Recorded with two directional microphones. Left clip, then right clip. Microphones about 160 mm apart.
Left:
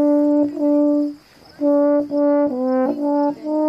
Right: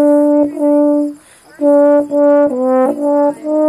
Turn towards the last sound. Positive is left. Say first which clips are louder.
# right 7 dB
turn(degrees=-15)  # may be behind; listen again after turning